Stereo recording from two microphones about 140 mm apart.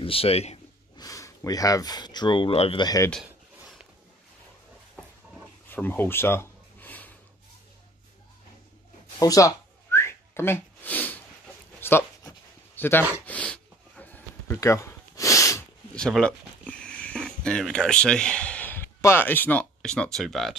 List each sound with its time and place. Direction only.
0.0 s speech: 40° left (ahead or behind)
0.9 s speech: 25° left (ahead or behind); by 2.8 s 40° left (ahead or behind)
2.8 s speech: 25° left (ahead or behind)
3.1 s a sound: centre (ahead or behind)
5.7 s a sound: 15° left (ahead or behind)
9.2 s whistling: 25° left (ahead or behind)
11.8 s a sound: 15° left (ahead or behind)
13.2 s gasp: 10° left (ahead or behind)
15.9 s speech: 5° left (ahead or behind)